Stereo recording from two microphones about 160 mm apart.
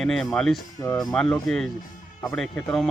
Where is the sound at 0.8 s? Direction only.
15° left (ahead or behind).